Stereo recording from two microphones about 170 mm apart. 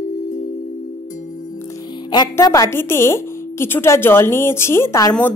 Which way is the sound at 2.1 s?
25° left (ahead or behind).